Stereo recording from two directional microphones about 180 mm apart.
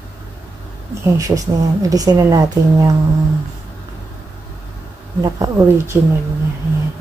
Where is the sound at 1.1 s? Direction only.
20° right (ahead or behind).